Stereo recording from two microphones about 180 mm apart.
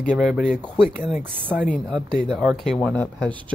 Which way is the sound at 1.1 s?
10° right (ahead or behind).